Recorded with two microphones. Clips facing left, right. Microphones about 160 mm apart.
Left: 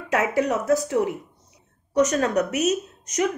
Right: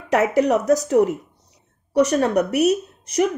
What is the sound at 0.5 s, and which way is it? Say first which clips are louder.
Speech: right 4 dB; 35° right (ahead or behind).